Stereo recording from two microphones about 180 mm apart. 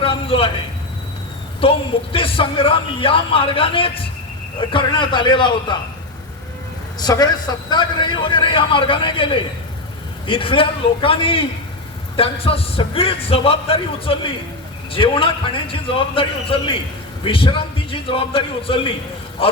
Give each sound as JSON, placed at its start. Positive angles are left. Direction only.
{"t": 0.0, "sound": "a sound", "side_deg": 30}
{"t": 1.6, "sound": "a man's voice", "side_deg": 30}
{"t": 7.0, "sound": "a man's voice", "side_deg": 20}